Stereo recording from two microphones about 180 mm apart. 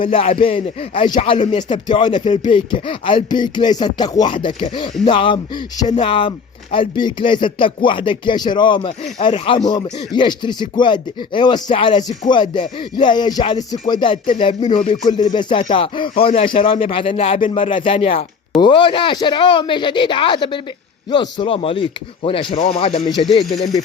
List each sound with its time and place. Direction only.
0.1 s speech: 30° left (ahead or behind)
23.4 s speech: centre (ahead or behind)